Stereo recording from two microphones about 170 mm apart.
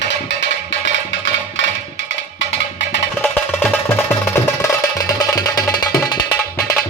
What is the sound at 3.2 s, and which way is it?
Music, 10° left (ahead or behind).